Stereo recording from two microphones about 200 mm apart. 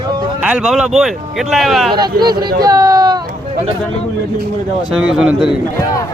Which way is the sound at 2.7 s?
15° right (ahead or behind).